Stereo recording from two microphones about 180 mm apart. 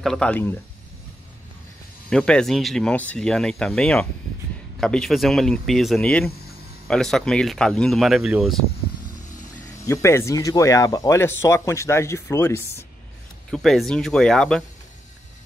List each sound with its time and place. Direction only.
0.0 s speech: 5° left (ahead or behind)
2.0 s speech: 5° left (ahead or behind)
9.8 s speech: 15° left (ahead or behind)
13.5 s speech: centre (ahead or behind)